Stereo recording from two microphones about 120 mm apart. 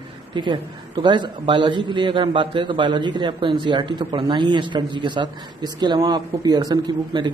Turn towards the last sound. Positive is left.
turn(degrees=-35)  # may be behind; listen again after turning